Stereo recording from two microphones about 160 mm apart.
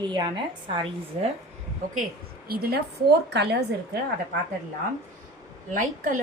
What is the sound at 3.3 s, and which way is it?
Speech, 90° right.